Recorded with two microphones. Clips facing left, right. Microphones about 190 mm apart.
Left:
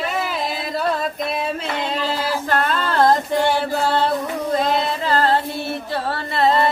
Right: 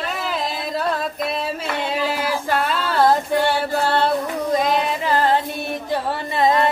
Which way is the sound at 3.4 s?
10° left (ahead or behind).